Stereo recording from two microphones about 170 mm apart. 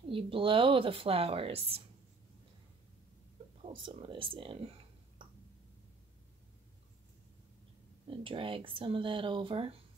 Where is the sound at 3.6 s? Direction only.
30° right (ahead or behind).